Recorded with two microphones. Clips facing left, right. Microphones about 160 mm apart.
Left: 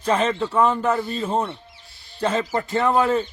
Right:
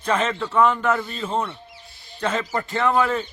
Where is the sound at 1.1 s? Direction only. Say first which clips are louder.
Left 2 dB; 40° left (ahead or behind).